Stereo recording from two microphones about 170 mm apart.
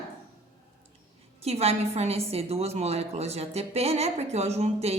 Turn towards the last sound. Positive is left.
turn(degrees=-40)  # may be behind; listen again after turning